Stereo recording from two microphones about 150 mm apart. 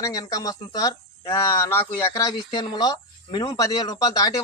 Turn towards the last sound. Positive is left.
turn(degrees=25)  # may be behind; listen again after turning